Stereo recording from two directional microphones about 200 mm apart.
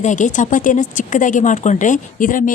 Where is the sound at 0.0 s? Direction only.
40° left (ahead or behind).